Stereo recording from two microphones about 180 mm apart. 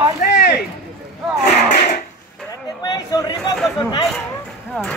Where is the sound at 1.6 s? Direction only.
45° left (ahead or behind).